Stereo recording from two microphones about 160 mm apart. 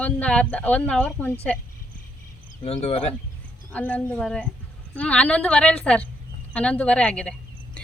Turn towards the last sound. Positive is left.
turn(degrees=5)  # may be behind; listen again after turning